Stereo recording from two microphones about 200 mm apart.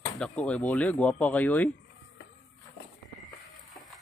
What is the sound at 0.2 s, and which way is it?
Speech, 5° left (ahead or behind).